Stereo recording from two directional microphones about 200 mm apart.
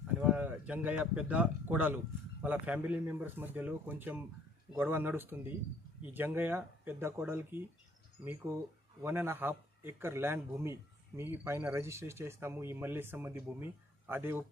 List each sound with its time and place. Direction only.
0.2 s speech: 5° right (ahead or behind)
9.0 s speech: 10° right (ahead or behind)